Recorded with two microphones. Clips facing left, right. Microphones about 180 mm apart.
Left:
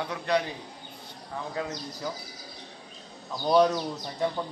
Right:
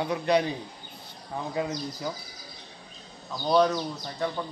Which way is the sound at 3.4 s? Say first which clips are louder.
Left 1 dB; 5° left (ahead or behind).